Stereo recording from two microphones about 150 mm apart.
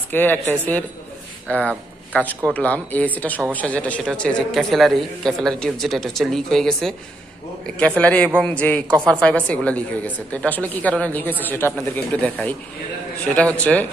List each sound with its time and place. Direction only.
0.1 s a woman's voice: 15° left (ahead or behind)